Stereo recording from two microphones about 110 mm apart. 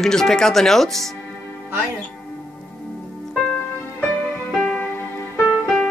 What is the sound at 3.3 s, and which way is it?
Music, 10° left (ahead or behind).